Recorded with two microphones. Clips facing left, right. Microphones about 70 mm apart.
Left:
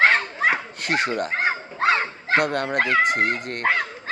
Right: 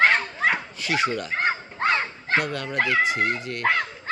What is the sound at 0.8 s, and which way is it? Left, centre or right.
Speech, left.